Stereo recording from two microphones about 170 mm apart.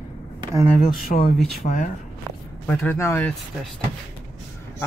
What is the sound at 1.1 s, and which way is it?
Speech, 65° left (ahead or behind).